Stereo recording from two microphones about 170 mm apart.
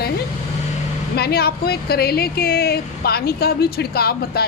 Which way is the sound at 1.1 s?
65° left (ahead or behind).